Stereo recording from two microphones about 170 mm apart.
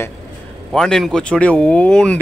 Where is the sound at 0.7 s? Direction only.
5° left (ahead or behind).